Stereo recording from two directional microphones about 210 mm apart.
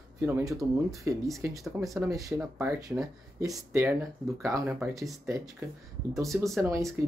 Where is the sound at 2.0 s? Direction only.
15° right (ahead or behind).